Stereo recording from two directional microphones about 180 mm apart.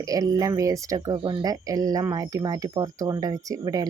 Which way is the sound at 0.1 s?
20° right (ahead or behind).